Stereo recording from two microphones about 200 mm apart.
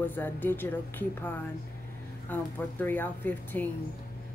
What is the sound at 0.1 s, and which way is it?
Speech, 10° left (ahead or behind).